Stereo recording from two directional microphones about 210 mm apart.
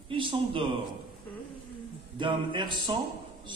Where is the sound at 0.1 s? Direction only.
25° right (ahead or behind).